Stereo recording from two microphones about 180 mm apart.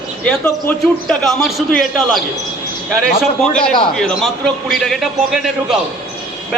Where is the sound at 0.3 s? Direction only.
5° left (ahead or behind).